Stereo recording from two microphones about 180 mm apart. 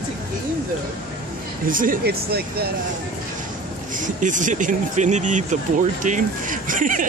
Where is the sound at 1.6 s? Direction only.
50° right (ahead or behind).